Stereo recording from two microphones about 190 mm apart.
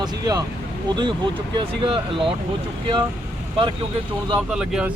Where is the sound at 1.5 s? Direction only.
25° right (ahead or behind).